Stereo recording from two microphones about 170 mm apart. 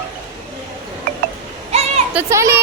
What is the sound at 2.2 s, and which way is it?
Speech, 15° right (ahead or behind).